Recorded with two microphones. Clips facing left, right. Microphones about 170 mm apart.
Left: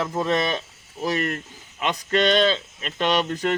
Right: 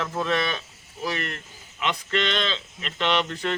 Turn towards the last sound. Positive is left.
turn(degrees=40)  # may be behind; listen again after turning